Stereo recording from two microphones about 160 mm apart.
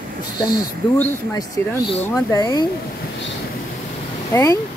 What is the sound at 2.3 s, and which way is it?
Speech, 25° left (ahead or behind).